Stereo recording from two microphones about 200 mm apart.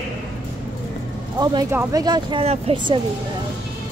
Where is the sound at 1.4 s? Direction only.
20° right (ahead or behind).